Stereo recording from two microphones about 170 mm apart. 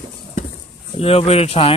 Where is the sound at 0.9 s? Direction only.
35° left (ahead or behind).